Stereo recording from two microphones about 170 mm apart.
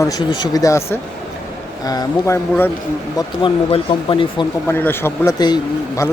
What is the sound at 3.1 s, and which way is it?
Speech, 30° left (ahead or behind).